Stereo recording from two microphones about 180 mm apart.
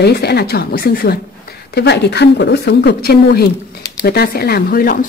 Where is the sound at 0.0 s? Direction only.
65° left (ahead or behind).